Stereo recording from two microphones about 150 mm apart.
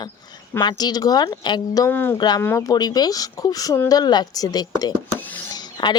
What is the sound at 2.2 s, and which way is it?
Speech, 30° left (ahead or behind).